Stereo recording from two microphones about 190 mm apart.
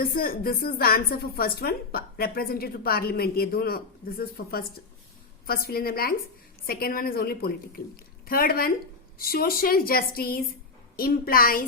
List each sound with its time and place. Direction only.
0.0 s a woman's voice: 50° left (ahead or behind)